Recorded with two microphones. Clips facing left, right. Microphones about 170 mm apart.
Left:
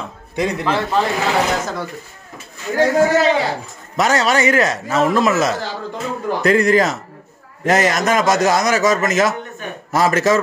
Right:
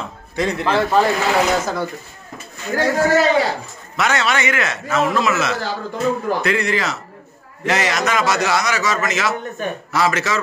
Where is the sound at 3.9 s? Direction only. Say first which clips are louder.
Left 3 dB; 40° left (ahead or behind).